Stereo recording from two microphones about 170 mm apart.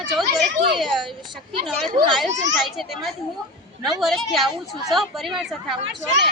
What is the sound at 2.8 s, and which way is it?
Speech, centre (ahead or behind).